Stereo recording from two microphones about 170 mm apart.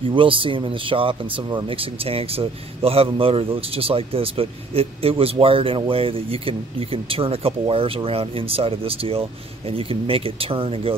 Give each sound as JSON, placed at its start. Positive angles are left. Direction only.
{"t": 0.1, "sound": "speech", "side_deg": -30}